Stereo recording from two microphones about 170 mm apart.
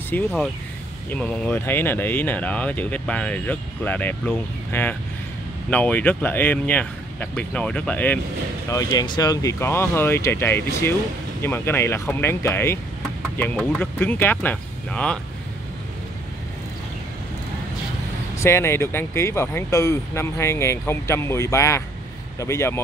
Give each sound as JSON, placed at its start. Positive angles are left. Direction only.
{"t": 0.1, "sound": "speech", "side_deg": 10}
{"t": 8.6, "sound": "speech", "side_deg": 20}
{"t": 13.7, "sound": "speech", "side_deg": 10}
{"t": 18.4, "sound": "speech", "side_deg": 15}